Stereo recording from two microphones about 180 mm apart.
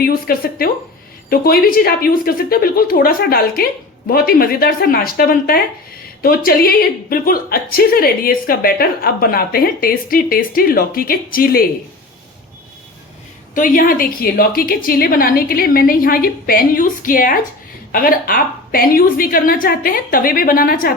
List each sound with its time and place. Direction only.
0.0 s a woman's voice: 55° left (ahead or behind)
13.5 s a woman's voice: 50° left (ahead or behind)